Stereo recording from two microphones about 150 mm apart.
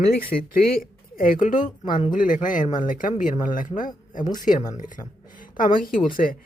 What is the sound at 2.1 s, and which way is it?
A woman's voice, 60° left (ahead or behind).